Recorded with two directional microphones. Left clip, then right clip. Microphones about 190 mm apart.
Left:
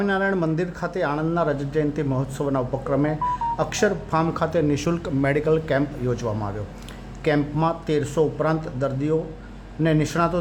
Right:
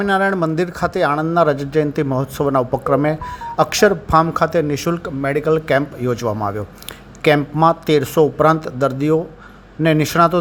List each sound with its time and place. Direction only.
0.1 s speech: 25° right (ahead or behind)